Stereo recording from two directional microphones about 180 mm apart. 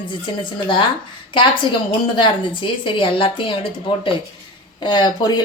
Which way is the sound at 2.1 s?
25° left (ahead or behind).